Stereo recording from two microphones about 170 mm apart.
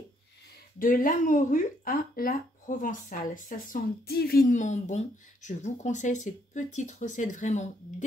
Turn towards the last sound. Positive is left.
turn(degrees=45)  # may be behind; listen again after turning